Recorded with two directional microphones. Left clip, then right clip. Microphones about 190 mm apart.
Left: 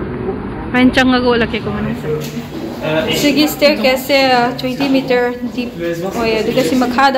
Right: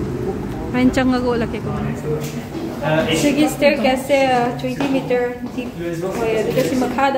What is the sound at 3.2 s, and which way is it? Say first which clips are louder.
A woman's voice: left 5 dB; centre (ahead or behind).